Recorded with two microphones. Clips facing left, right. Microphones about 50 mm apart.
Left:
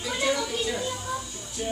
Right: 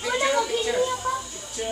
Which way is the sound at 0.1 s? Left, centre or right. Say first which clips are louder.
Right 4 dB; right.